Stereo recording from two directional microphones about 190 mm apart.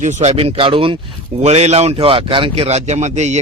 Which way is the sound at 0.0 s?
35° right (ahead or behind).